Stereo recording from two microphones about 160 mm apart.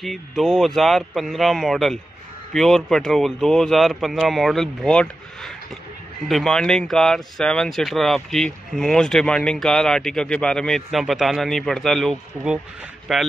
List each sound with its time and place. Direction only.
0.0 s speech: centre (ahead or behind)